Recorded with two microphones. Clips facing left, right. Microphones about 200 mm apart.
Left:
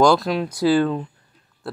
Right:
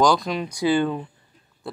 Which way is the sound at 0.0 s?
5° left (ahead or behind).